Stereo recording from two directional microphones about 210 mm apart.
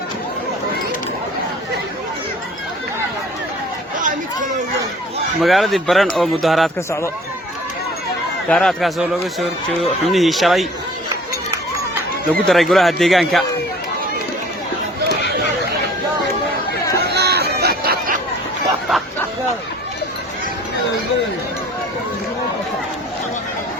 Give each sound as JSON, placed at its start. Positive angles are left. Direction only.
{"t": 3.9, "sound": "chatter", "side_deg": -40}
{"t": 5.4, "sound": "speech", "side_deg": 0}
{"t": 8.4, "sound": "speech", "side_deg": 5}
{"t": 12.3, "sound": "speech", "side_deg": 0}
{"t": 17.2, "sound": "chatter", "side_deg": -50}